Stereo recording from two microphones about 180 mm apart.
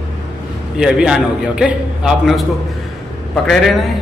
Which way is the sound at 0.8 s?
5° right (ahead or behind).